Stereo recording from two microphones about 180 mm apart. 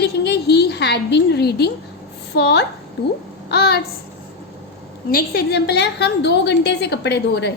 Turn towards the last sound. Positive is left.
turn(degrees=70)  # may be behind; listen again after turning